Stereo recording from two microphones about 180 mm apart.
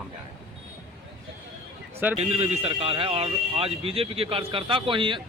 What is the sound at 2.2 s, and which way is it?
Speech, 35° right (ahead or behind).